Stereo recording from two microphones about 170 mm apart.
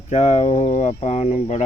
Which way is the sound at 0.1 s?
40° left (ahead or behind).